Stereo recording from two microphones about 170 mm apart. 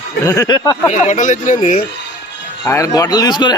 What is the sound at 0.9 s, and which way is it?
Speech, 45° left (ahead or behind).